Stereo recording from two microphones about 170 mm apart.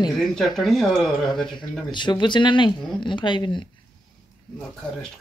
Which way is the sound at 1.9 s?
25° left (ahead or behind).